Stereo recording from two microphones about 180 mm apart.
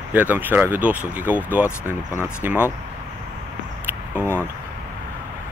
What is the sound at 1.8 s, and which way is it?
Speech, 15° left (ahead or behind).